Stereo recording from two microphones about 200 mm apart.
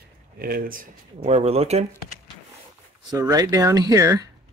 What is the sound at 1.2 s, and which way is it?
Speech, 30° right (ahead or behind).